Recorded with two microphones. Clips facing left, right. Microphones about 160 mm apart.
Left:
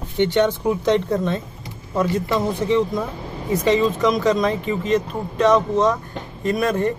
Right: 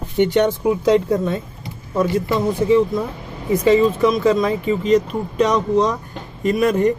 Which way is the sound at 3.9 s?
10° right (ahead or behind).